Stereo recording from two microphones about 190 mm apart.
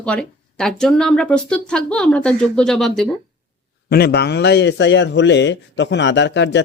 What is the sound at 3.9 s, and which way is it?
Speech, 55° left (ahead or behind).